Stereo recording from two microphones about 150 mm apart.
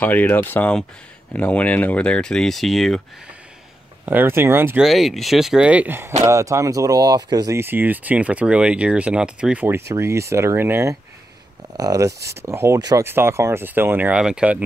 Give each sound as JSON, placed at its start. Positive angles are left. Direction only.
{"t": 0.0, "sound": "speech", "side_deg": 10}
{"t": 4.0, "sound": "speech", "side_deg": -10}
{"t": 4.8, "sound": "speech", "side_deg": 0}